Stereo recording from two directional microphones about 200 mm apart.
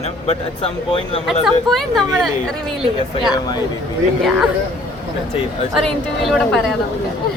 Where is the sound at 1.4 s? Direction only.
Centre (ahead or behind).